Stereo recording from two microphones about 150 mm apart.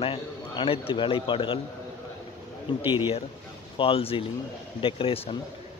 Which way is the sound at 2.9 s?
30° left (ahead or behind).